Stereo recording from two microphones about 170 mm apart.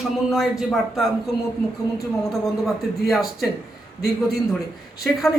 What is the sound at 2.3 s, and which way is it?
Speech, centre (ahead or behind).